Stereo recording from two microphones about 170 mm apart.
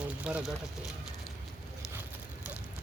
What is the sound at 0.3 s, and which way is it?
Speech, 5° right (ahead or behind).